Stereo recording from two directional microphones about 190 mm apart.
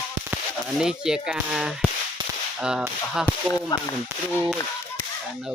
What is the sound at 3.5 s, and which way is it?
Speech, 20° left (ahead or behind).